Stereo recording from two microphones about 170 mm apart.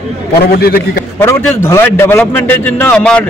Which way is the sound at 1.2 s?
15° left (ahead or behind).